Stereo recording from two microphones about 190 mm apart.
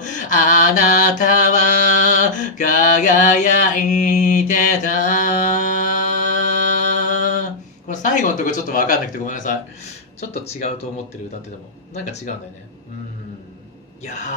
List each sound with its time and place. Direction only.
0.2 s mantra: 45° left (ahead or behind)
7.9 s speech: 40° left (ahead or behind)
11.9 s speech: 35° left (ahead or behind)